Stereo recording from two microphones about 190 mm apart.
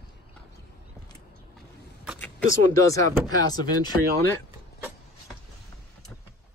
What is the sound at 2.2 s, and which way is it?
Speech, 15° left (ahead or behind).